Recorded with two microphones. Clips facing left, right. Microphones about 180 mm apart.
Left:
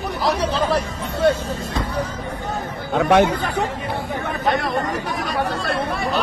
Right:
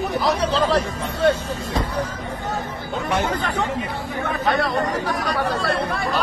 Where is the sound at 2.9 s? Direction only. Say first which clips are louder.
Left 8 dB; 70° left (ahead or behind).